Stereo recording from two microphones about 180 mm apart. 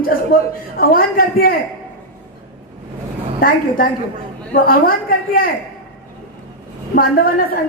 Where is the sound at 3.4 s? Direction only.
50° left (ahead or behind).